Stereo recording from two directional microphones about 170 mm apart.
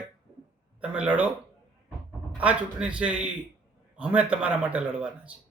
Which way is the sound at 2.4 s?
10° right (ahead or behind).